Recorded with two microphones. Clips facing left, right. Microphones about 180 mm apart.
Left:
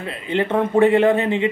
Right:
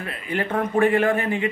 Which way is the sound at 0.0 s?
25° left (ahead or behind).